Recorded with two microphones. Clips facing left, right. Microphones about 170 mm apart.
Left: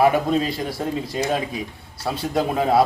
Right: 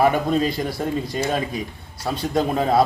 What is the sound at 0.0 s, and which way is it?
A man's voice, 5° left (ahead or behind).